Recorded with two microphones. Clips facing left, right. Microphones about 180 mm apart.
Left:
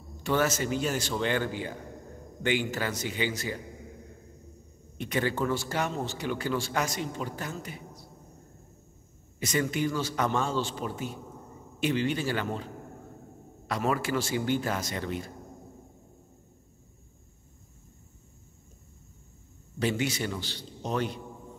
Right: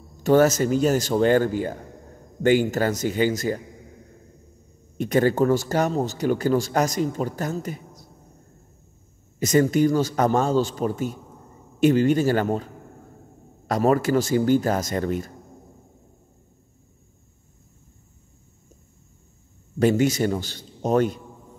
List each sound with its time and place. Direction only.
0.2 s speech: 40° right (ahead or behind)
4.9 s speech: 45° right (ahead or behind)
9.4 s speech: 45° right (ahead or behind)
13.7 s speech: 40° right (ahead or behind)
19.8 s speech: 45° right (ahead or behind)